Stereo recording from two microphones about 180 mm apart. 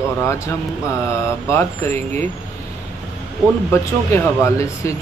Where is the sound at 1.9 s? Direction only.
40° right (ahead or behind).